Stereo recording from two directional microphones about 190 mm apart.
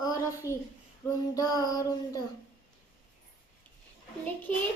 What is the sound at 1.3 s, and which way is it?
Child singing, 20° left (ahead or behind).